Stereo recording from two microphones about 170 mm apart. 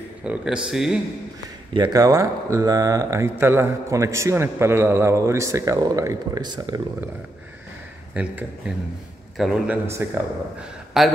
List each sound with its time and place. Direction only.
0.2 s a man's voice: 5° right (ahead or behind)
1.7 s speech: 25° right (ahead or behind)
8.1 s a man's voice: 5° right (ahead or behind)